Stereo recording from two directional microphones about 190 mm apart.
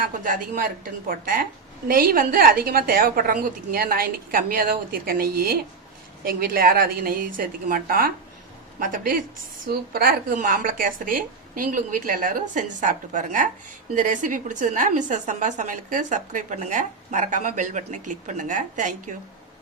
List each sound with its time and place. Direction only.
0.0 s a woman's voice: 45° right (ahead or behind)